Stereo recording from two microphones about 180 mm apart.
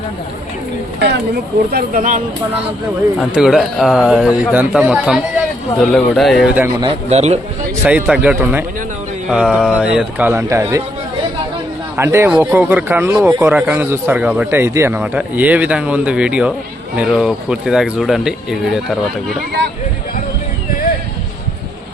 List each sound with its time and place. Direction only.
1.7 s speech: 50° right (ahead or behind)
3.2 s a man's voice: 5° right (ahead or behind)
6.8 s a man's voice: 35° right (ahead or behind)
7.9 s a man's voice: 5° right (ahead or behind)
11.9 s a man's voice: 15° right (ahead or behind)